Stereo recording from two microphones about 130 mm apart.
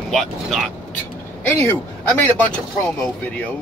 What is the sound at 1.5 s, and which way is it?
Speech, 15° left (ahead or behind).